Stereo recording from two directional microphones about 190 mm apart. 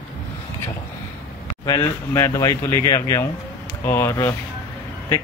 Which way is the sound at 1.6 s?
15° left (ahead or behind).